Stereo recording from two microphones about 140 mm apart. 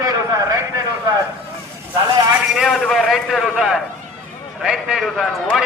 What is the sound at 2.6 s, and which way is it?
A man's voice, centre (ahead or behind).